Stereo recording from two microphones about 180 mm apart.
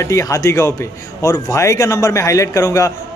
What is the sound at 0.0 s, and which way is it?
Speech, 15° left (ahead or behind).